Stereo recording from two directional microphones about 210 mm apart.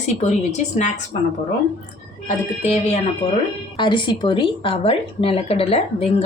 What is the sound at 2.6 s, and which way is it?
A woman's voice, 30° left (ahead or behind).